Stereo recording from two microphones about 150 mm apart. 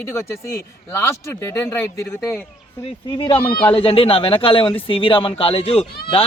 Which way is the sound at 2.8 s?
35° left (ahead or behind).